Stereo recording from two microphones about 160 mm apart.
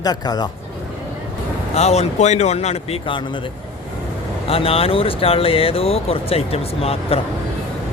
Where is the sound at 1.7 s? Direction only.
40° left (ahead or behind).